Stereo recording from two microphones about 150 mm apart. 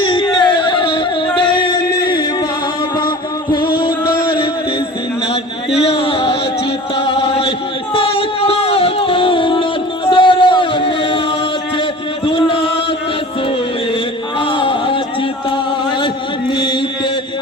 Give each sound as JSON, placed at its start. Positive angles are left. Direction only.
{"t": 0.0, "sound": "music", "side_deg": 35}
{"t": 3.5, "sound": "music", "side_deg": 30}
{"t": 5.3, "sound": "a sound", "side_deg": 40}
{"t": 7.0, "sound": "chant", "side_deg": 40}
{"t": 7.9, "sound": "music", "side_deg": 40}
{"t": 12.2, "sound": "music", "side_deg": 35}
{"t": 14.3, "sound": "a sound", "side_deg": 35}
{"t": 16.5, "sound": "chant", "side_deg": 30}